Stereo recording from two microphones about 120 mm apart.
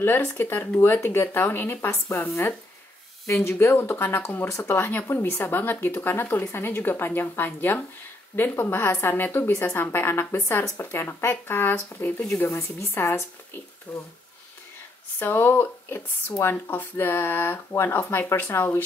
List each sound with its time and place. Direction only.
0.0 s speech: 20° left (ahead or behind)
15.1 s speech: 20° left (ahead or behind)